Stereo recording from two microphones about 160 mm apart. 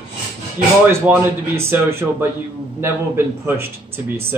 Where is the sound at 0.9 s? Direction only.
15° right (ahead or behind).